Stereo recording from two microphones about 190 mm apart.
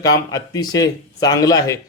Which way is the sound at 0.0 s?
20° left (ahead or behind).